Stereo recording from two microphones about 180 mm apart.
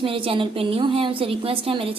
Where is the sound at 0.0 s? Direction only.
30° right (ahead or behind).